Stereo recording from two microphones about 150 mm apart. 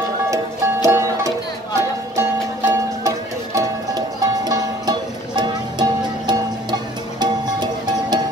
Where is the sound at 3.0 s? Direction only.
20° right (ahead or behind).